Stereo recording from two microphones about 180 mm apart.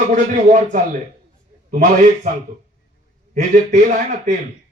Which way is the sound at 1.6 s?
45° right (ahead or behind).